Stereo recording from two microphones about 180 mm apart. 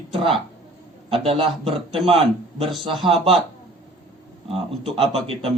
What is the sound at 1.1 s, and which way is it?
Speech, 30° right (ahead or behind).